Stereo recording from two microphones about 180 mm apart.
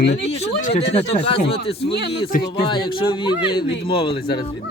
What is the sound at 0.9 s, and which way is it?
Speech, 35° left (ahead or behind).